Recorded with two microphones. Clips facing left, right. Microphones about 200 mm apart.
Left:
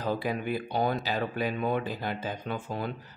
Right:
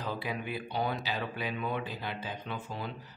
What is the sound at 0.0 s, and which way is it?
Speech, 45° left (ahead or behind).